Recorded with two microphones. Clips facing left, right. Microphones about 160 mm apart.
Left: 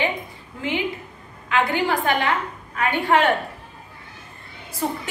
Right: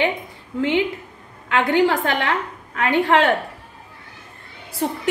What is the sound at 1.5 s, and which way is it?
A woman's voice, 80° right.